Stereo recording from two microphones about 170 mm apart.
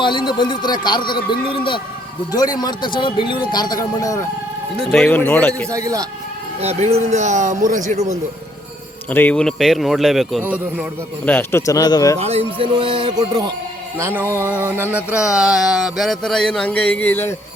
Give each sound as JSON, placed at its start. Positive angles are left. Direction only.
{"t": 0.0, "sound": "speech", "side_deg": 30}
{"t": 4.8, "sound": "speech", "side_deg": 5}
{"t": 5.7, "sound": "music", "side_deg": -20}
{"t": 6.6, "sound": "speech", "side_deg": -40}
{"t": 9.0, "sound": "a sound", "side_deg": 10}
{"t": 10.4, "sound": "a man's voice", "side_deg": -10}
{"t": 11.3, "sound": "speech", "side_deg": 15}
{"t": 12.2, "sound": "music", "side_deg": -35}
{"t": 14.0, "sound": "a sound", "side_deg": -15}